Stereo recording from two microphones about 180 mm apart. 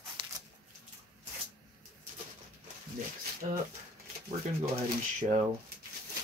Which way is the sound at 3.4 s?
35° right (ahead or behind).